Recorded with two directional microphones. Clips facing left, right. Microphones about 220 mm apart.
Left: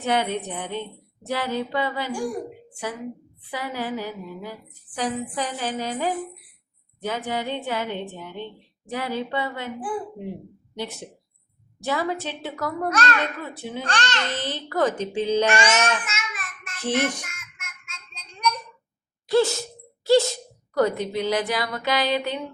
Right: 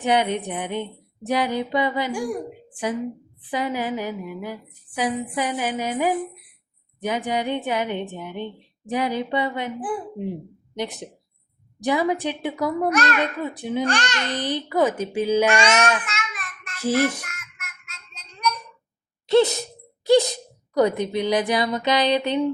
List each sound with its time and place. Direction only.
0.0 s a child's voice: 15° right (ahead or behind)
3.5 s a child's voice: 15° right (ahead or behind)
16.0 s a sound: 5° left (ahead or behind)
17.2 s child singing: centre (ahead or behind)
19.3 s speech: 20° right (ahead or behind)